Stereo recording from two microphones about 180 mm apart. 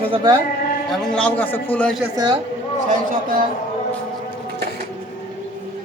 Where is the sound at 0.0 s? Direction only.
25° right (ahead or behind).